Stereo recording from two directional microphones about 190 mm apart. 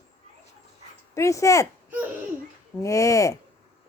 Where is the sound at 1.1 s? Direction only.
15° left (ahead or behind).